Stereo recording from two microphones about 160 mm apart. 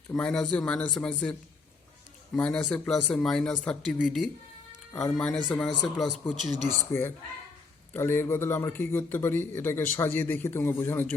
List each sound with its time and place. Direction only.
0.1 s speech: 5° left (ahead or behind)
6.9 s a man's voice: 15° left (ahead or behind)